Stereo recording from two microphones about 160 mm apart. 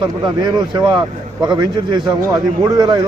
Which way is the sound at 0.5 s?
25° right (ahead or behind).